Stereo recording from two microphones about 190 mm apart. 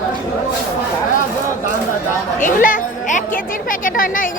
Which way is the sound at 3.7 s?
45° left (ahead or behind).